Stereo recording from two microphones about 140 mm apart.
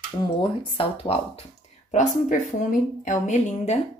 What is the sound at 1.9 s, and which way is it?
A woman's voice, 55° left (ahead or behind).